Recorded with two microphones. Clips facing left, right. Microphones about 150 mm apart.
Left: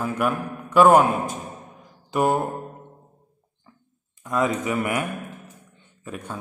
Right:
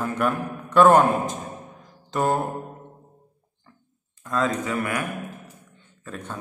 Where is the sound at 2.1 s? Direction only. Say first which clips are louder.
Left 2 dB; 10° left (ahead or behind).